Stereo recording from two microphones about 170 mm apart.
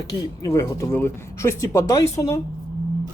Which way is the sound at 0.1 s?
20° left (ahead or behind).